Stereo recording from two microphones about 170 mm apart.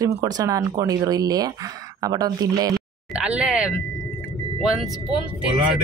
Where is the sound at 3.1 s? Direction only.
5° right (ahead or behind).